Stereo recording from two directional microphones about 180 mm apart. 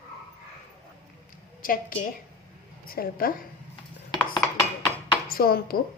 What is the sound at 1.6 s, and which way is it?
Speech, 50° left (ahead or behind).